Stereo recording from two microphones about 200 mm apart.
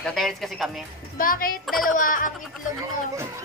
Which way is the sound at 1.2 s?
45° left (ahead or behind).